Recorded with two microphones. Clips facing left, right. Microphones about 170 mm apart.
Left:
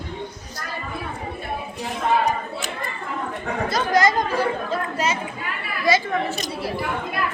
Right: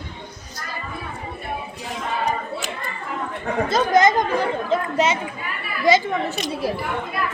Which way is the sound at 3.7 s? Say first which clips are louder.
Right 3 dB; 25° right (ahead or behind).